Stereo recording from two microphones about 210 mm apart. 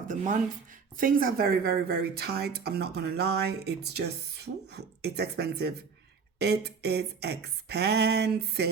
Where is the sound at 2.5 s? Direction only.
50° right (ahead or behind).